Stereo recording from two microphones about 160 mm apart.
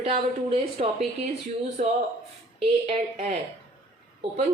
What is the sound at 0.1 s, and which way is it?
Speech, 40° right (ahead or behind).